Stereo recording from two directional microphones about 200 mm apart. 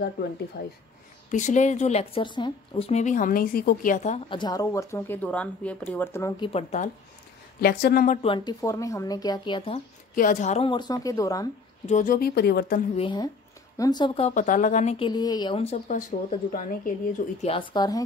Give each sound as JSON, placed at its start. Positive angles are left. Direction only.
{"t": 0.6, "sound": "speech", "side_deg": 50}
{"t": 1.3, "sound": "speech", "side_deg": 35}
{"t": 4.4, "sound": "speech", "side_deg": 20}
{"t": 6.4, "sound": "speech", "side_deg": 35}
{"t": 7.6, "sound": "speech", "side_deg": 50}
{"t": 8.2, "sound": "a woman's voice", "side_deg": 25}
{"t": 8.5, "sound": "a woman's voice", "side_deg": 15}
{"t": 10.1, "sound": "a woman's voice", "side_deg": 40}
{"t": 11.9, "sound": "speech", "side_deg": 45}
{"t": 12.9, "sound": "a woman's voice", "side_deg": 25}
{"t": 17.4, "sound": "a woman's voice", "side_deg": 25}